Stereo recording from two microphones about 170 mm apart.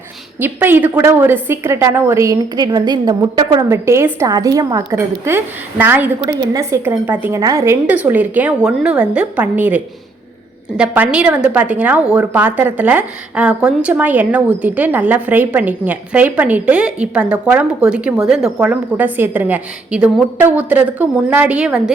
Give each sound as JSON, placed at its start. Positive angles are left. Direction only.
{"t": 0.3, "sound": "speech", "side_deg": -10}